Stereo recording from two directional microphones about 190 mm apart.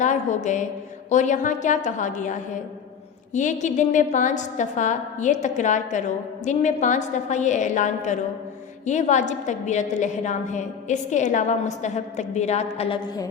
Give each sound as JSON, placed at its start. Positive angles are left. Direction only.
{"t": 0.0, "sound": "a woman's voice", "side_deg": 40}